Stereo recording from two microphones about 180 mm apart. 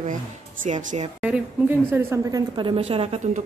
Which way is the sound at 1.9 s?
15° right (ahead or behind).